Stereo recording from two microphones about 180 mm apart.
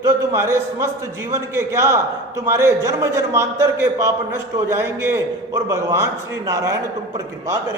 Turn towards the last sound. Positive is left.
turn(degrees=-20)  # may be behind; listen again after turning